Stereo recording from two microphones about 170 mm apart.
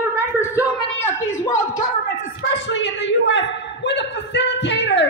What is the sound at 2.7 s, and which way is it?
A woman's voice, 90° left.